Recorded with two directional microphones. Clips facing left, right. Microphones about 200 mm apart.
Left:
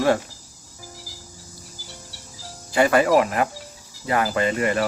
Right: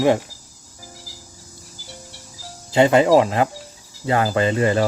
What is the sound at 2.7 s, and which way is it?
Speech, 25° right (ahead or behind).